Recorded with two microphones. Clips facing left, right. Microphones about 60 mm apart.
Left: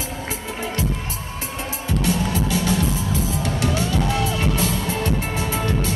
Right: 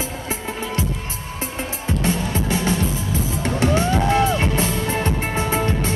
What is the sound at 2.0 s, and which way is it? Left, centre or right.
Music, right.